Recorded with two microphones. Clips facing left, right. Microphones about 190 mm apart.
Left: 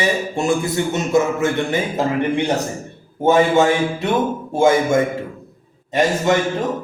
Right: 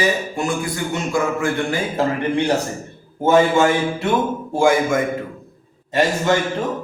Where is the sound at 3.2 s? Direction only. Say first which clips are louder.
Left 1 dB; 20° left (ahead or behind).